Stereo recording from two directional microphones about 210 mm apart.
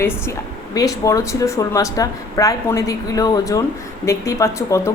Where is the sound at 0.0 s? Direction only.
10° left (ahead or behind).